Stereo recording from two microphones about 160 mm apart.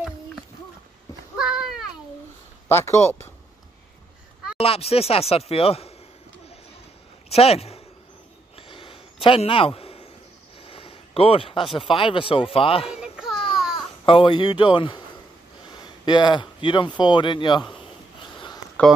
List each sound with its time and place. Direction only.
1.3 s a sound: 5° right (ahead or behind)
2.7 s speech: 15° left (ahead or behind)
4.6 s speech: 40° left (ahead or behind)
7.2 s speech: 40° left (ahead or behind)
8.5 s a sound: 35° left (ahead or behind)
11.9 s speech: 35° left (ahead or behind)
13.0 s baby cry: 5° right (ahead or behind)
14.0 s speech: 30° left (ahead or behind)
18.2 s a sound: 30° left (ahead or behind)
18.8 s speech: 10° left (ahead or behind)